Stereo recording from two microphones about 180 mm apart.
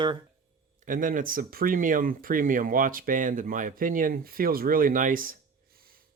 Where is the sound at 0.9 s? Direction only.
50° right (ahead or behind).